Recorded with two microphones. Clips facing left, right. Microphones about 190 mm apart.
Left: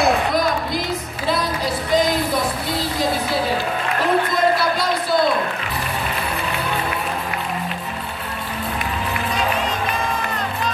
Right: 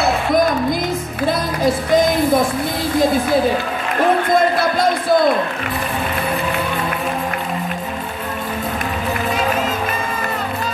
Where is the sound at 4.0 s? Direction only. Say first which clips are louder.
Right 5 dB; 50° right (ahead or behind).